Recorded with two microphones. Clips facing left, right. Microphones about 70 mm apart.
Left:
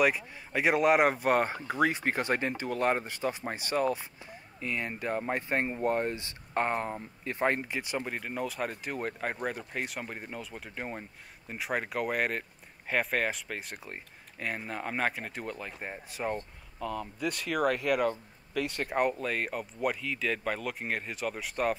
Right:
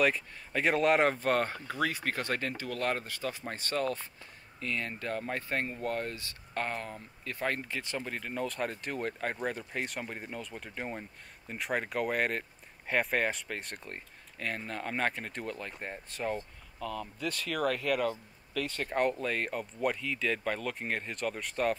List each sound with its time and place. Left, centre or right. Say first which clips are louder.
0.0 s speech: left 2 dB; centre